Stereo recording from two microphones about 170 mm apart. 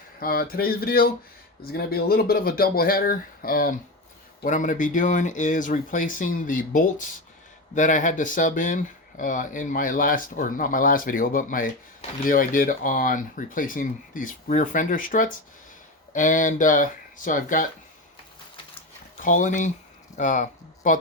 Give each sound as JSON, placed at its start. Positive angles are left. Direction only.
{"t": 0.2, "sound": "speech", "side_deg": 60}
{"t": 19.2, "sound": "speech", "side_deg": 50}